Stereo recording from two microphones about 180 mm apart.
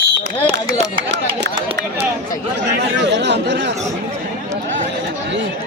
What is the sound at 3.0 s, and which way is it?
Speech, 75° right (ahead or behind).